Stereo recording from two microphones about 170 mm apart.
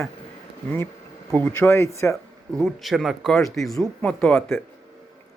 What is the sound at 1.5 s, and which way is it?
Speech, 15° left (ahead or behind).